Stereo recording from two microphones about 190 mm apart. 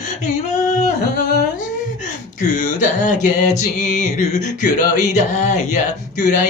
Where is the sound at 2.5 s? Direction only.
40° left (ahead or behind).